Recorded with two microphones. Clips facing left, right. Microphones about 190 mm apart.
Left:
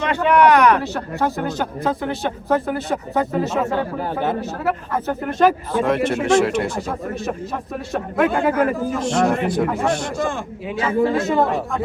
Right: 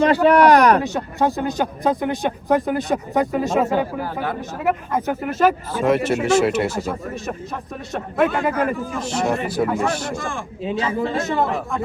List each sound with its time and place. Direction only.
0.0 s speech: 35° right (ahead or behind)
0.8 s speech: 15° right (ahead or behind)
4.0 s speech: 20° left (ahead or behind)
4.4 s speech: 15° right (ahead or behind)
5.3 s a man's voice: 5° right (ahead or behind)
10.6 s speech: 25° right (ahead or behind)